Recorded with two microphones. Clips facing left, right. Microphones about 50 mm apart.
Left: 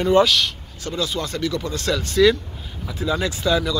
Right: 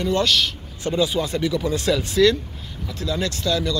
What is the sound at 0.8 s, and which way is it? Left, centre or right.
Speech, centre.